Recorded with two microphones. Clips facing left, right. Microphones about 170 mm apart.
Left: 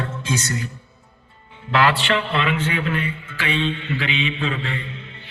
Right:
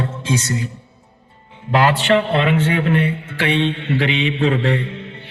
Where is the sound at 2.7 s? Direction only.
55° right (ahead or behind).